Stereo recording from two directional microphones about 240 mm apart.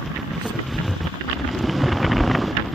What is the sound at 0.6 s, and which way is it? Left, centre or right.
Vehicle, centre.